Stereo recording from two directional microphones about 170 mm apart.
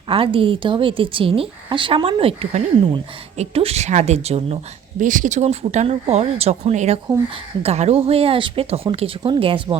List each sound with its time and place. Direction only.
0.1 s speech: 30° right (ahead or behind)
4.9 s speech: 50° right (ahead or behind); by 9.7 s 30° right (ahead or behind)